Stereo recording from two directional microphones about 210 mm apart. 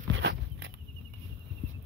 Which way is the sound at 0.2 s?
55° right (ahead or behind).